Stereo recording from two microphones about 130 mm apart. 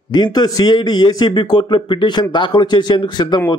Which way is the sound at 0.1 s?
35° left (ahead or behind).